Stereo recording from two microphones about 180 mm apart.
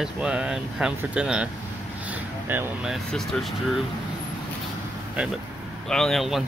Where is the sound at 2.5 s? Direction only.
10° right (ahead or behind).